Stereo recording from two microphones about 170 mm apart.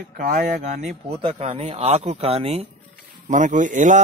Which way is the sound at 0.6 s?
40° right (ahead or behind).